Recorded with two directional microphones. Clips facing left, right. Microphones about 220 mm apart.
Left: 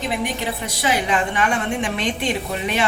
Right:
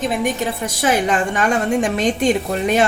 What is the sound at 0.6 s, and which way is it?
Speech, 50° right (ahead or behind).